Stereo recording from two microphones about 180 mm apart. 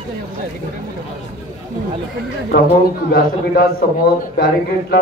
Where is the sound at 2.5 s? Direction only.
55° left (ahead or behind).